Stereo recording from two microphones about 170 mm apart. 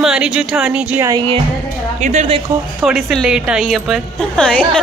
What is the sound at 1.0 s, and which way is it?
Speech, 25° right (ahead or behind).